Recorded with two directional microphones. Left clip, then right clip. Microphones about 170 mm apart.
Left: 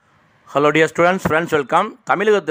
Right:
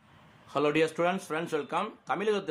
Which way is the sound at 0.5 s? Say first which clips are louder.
Left 12 dB; 50° left (ahead or behind).